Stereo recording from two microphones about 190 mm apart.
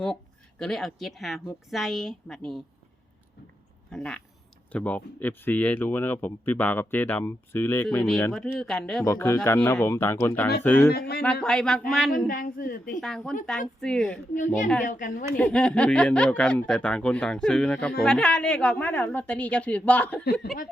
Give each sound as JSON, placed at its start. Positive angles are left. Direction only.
{"t": 0.6, "sound": "speech", "side_deg": 5}
{"t": 3.9, "sound": "speech", "side_deg": 5}
{"t": 10.9, "sound": "speech", "side_deg": 55}
{"t": 11.2, "sound": "speech", "side_deg": 5}
{"t": 12.1, "sound": "a woman's voice", "side_deg": 45}
{"t": 13.0, "sound": "speech", "side_deg": 0}
{"t": 14.3, "sound": "a woman's voice", "side_deg": 45}
{"t": 15.4, "sound": "speech", "side_deg": 5}
{"t": 20.4, "sound": "speech", "side_deg": 55}